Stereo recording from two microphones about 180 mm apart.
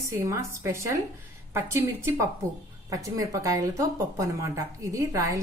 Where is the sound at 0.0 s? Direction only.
15° right (ahead or behind).